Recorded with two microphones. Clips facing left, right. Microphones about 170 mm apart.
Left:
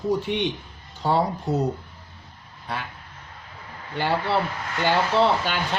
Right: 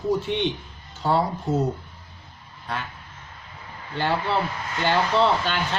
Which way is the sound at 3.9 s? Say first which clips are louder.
Left 1 dB; 10° left (ahead or behind).